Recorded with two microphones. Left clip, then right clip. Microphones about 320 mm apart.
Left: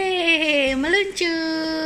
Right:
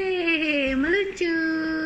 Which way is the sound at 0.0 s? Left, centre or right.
Left.